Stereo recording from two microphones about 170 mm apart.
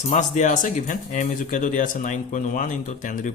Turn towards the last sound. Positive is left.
turn(degrees=50)  # may be behind; listen again after turning